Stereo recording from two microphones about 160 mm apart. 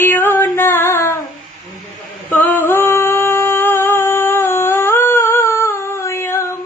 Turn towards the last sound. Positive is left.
turn(degrees=15)  # may be behind; listen again after turning